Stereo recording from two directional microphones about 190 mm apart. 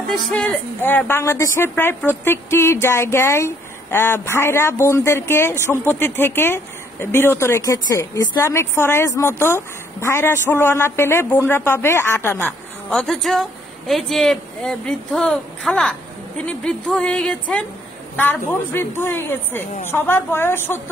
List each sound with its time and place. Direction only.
0.1 s a woman's voice: 5° left (ahead or behind)
16.4 s music: 5° left (ahead or behind)
18.1 s a woman's voice: 10° left (ahead or behind)